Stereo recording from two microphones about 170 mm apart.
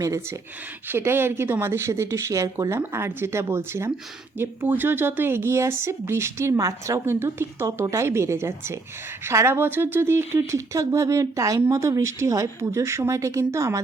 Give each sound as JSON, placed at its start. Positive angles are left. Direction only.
{"t": 0.0, "sound": "speech", "side_deg": -20}